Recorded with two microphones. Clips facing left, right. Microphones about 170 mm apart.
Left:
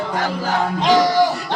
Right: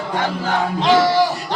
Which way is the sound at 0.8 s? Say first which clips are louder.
Right 1 dB; 15° left (ahead or behind).